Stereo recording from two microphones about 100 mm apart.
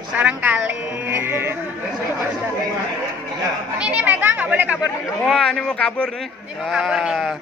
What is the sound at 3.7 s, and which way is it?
Speech, 15° right (ahead or behind).